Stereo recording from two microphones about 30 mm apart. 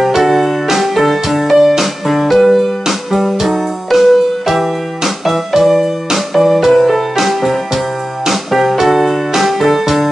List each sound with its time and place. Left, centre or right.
0.0 s keyboard: centre
1.6 s music: centre